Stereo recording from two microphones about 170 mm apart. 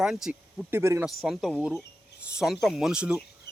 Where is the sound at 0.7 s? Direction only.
15° right (ahead or behind).